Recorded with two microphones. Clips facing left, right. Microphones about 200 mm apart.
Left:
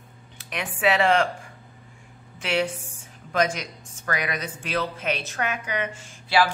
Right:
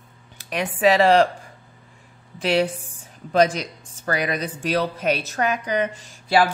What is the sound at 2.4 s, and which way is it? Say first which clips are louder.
A woman's voice: right 5 dB; 35° right (ahead or behind).